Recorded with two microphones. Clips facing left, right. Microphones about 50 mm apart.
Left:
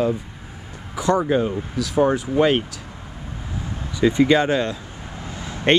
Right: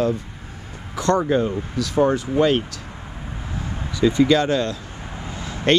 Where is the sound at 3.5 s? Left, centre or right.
Right.